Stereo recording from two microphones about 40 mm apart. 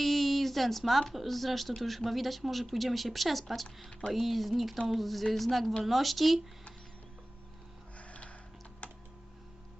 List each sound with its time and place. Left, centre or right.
0.0 s speech: centre
7.9 s music: left
8.8 s computer keyboard: left